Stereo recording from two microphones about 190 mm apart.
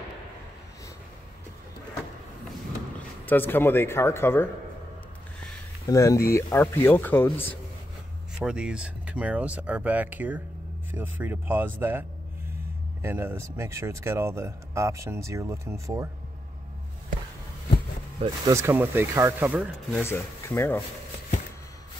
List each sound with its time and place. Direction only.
3.3 s speech: 10° left (ahead or behind)
5.9 s speech: 15° left (ahead or behind)
8.5 s speech: 5° right (ahead or behind)
18.2 s speech: 20° right (ahead or behind)
20.0 s speech: 15° left (ahead or behind)